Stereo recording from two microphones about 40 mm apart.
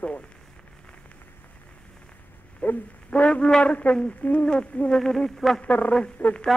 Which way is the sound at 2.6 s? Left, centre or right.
Left.